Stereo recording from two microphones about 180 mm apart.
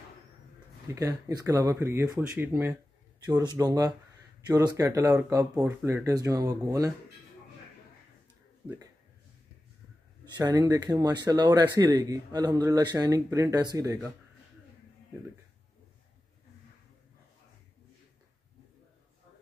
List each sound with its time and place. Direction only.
0.8 s speech: 15° right (ahead or behind)
10.2 s speech: 20° right (ahead or behind)